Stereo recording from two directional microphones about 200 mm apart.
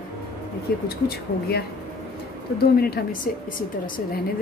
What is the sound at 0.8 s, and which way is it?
A woman's voice, 50° left (ahead or behind).